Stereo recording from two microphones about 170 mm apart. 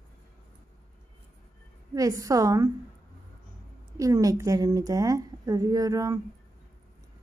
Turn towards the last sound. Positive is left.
turn(degrees=-20)  # may be behind; listen again after turning